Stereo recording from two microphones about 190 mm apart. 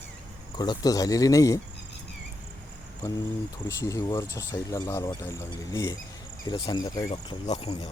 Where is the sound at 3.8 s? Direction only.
15° left (ahead or behind).